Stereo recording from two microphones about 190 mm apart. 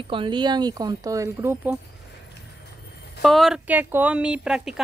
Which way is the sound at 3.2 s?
Centre (ahead or behind).